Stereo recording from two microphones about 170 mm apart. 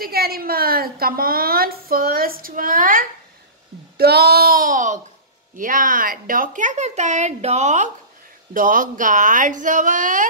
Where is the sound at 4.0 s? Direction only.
70° right (ahead or behind).